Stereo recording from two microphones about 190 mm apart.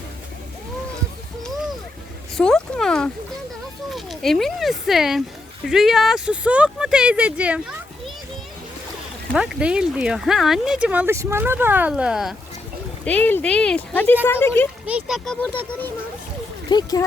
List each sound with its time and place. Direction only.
2.4 s speech: 5° left (ahead or behind)
9.3 s speech: 5° right (ahead or behind)
13.1 s speech: 10° left (ahead or behind)
14.8 s speech: 5° right (ahead or behind)
16.6 s speech: 20° left (ahead or behind)